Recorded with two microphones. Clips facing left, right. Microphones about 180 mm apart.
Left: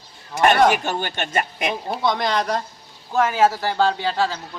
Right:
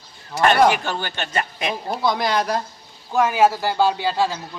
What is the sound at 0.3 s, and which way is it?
Speech, 20° left (ahead or behind).